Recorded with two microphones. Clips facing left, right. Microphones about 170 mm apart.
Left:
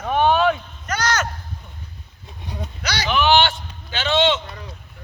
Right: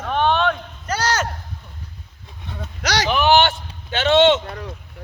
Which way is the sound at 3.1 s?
40° right (ahead or behind).